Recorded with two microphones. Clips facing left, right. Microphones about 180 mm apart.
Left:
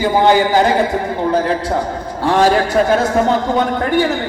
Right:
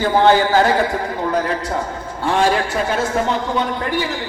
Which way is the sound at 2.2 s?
40° left (ahead or behind).